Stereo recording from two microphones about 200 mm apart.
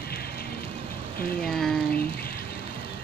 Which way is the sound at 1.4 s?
Centre (ahead or behind).